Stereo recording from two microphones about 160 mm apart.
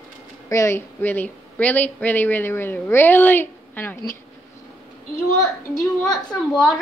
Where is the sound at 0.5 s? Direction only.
20° left (ahead or behind).